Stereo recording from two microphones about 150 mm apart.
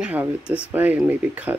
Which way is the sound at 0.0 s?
10° right (ahead or behind).